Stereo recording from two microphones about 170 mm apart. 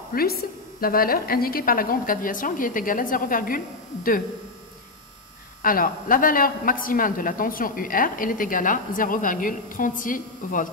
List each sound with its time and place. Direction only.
0.1 s a woman's voice: 65° left (ahead or behind)
5.6 s a man's voice: 55° left (ahead or behind)